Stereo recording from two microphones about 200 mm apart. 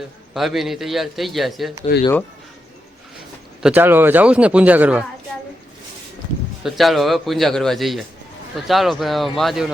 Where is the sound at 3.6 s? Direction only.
5° right (ahead or behind).